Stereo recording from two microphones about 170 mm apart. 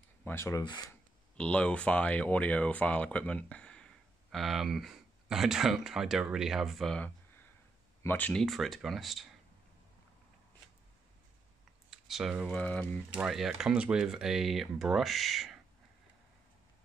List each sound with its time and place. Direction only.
0.2 s speech: 15° left (ahead or behind)
1.3 s speech: 5° left (ahead or behind)
11.9 s speech: centre (ahead or behind)
12.5 s speech: 10° left (ahead or behind)
13.1 s speech: 5° right (ahead or behind)